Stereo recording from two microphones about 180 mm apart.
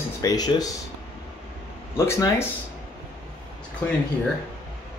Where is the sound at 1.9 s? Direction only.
15° left (ahead or behind).